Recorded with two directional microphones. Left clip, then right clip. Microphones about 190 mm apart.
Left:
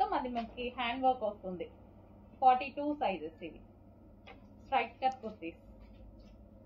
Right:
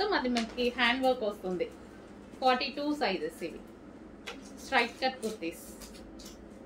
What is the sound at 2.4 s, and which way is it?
Speech, 30° right (ahead or behind).